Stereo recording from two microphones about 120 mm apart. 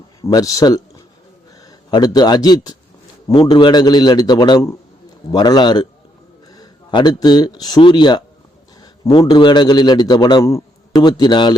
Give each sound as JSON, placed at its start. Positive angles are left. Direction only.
{"t": 0.2, "sound": "a man's voice", "side_deg": 30}